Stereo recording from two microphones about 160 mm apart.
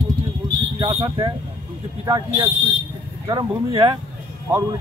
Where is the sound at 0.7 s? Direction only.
30° right (ahead or behind).